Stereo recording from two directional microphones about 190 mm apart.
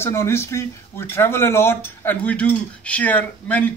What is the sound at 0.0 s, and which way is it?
Speech, 15° left (ahead or behind).